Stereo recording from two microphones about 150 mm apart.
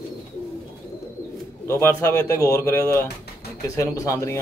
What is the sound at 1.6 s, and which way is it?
A man's voice, 20° left (ahead or behind).